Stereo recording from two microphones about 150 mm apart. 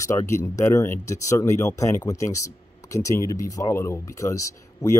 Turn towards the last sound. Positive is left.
turn(degrees=20)  # may be behind; listen again after turning